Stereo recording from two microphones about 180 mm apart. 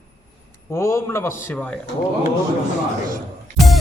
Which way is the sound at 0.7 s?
15° left (ahead or behind).